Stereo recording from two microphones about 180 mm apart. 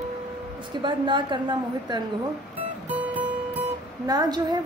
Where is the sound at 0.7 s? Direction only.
25° right (ahead or behind).